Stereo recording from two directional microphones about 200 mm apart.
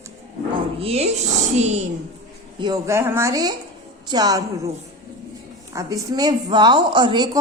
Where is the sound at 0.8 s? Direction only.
30° right (ahead or behind).